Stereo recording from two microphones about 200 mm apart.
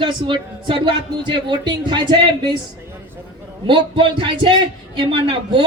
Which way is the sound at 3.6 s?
25° right (ahead or behind).